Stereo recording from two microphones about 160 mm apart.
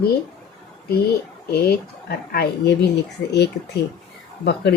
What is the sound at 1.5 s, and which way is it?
Speech, 80° left.